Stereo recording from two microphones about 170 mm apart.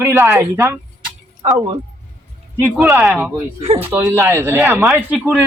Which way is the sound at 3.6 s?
35° right (ahead or behind).